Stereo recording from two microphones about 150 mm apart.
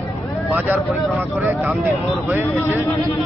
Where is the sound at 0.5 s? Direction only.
10° right (ahead or behind).